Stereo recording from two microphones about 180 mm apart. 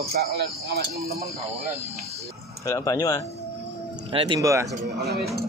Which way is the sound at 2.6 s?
15° left (ahead or behind).